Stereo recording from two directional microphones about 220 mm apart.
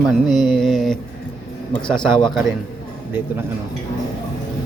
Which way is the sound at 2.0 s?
20° left (ahead or behind).